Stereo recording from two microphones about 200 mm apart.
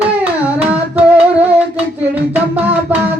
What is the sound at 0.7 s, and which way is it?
Music, 5° right (ahead or behind).